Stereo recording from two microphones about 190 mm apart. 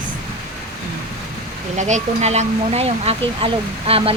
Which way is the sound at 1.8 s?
35° right (ahead or behind).